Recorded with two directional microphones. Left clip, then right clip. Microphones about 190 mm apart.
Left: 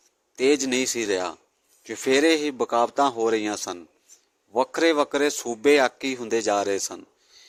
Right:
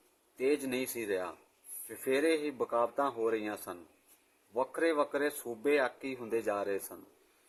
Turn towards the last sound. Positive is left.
turn(degrees=45)  # may be behind; listen again after turning